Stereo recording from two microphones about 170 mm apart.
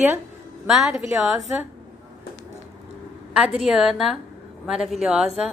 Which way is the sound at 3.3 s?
5° right (ahead or behind).